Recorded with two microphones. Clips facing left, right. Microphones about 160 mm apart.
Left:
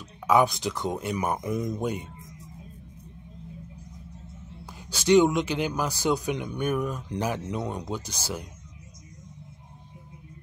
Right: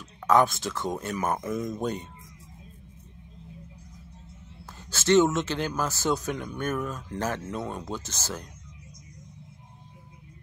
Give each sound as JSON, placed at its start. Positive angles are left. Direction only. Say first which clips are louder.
{"t": 0.3, "sound": "speech", "louder": "even", "side_deg": 15}
{"t": 4.9, "sound": "speech", "louder": "left 1 dB", "side_deg": 15}